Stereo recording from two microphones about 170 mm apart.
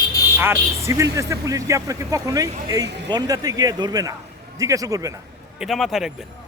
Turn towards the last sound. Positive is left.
turn(degrees=0)  # may be behind; listen again after turning